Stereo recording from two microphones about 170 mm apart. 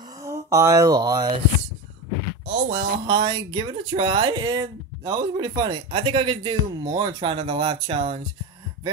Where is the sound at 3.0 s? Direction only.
25° right (ahead or behind).